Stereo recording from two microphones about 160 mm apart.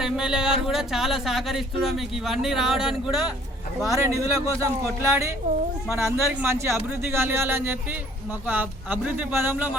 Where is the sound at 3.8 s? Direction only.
20° right (ahead or behind).